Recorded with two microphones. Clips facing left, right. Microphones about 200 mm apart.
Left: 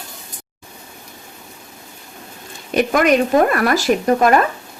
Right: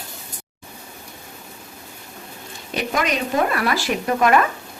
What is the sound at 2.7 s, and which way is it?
Speech, 55° left (ahead or behind).